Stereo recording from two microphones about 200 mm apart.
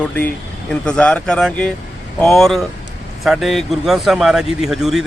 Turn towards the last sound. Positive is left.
turn(degrees=0)  # may be behind; listen again after turning